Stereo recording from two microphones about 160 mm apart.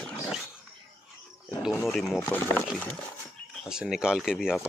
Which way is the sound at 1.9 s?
Centre (ahead or behind).